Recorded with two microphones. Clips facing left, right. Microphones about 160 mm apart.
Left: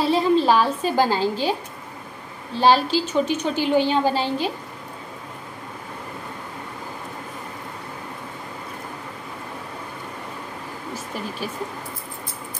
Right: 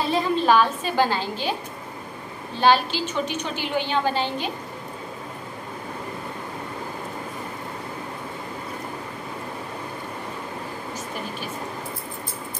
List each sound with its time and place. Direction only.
0.1 s a woman's voice: 30° left (ahead or behind)
2.5 s a woman's voice: 35° left (ahead or behind)